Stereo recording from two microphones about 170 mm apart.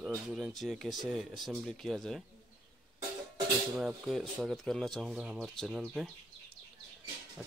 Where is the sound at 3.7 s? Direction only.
Centre (ahead or behind).